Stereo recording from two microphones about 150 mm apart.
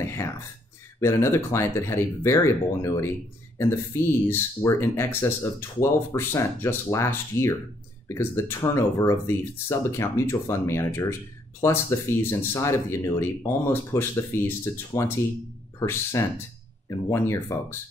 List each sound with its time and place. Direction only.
0.0 s whispering: 20° left (ahead or behind)
0.9 s speech: 20° left (ahead or behind)
4.6 s speech: 15° left (ahead or behind)